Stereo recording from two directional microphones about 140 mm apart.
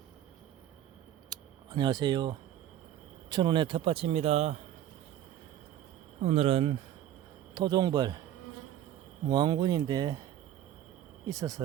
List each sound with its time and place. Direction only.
1.3 s a sound: 30° right (ahead or behind)
3.2 s speech: 30° right (ahead or behind); by 4.5 s 50° right (ahead or behind)
6.2 s speech: 45° right (ahead or behind)
7.5 s speech: 30° right (ahead or behind)
9.3 s speech: 30° right (ahead or behind)
11.3 s speech: 25° right (ahead or behind)